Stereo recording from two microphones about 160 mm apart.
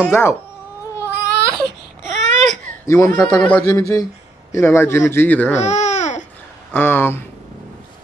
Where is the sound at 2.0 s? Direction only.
Centre (ahead or behind).